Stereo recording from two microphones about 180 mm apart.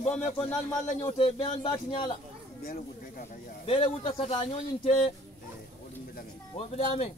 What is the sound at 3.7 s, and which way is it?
Speech, 30° left (ahead or behind).